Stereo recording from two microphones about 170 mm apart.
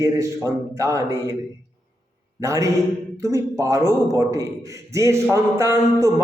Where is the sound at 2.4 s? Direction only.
15° right (ahead or behind).